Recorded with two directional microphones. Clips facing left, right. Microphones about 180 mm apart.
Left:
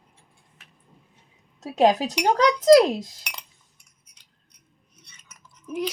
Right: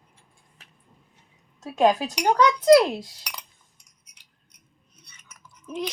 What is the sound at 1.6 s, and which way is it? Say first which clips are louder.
Speech: left 1 dB; 35° left (ahead or behind).